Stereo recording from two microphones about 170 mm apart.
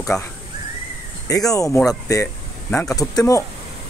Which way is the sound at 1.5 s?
20° left (ahead or behind).